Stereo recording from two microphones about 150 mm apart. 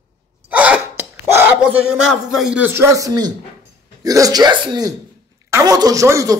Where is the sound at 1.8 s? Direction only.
5° right (ahead or behind).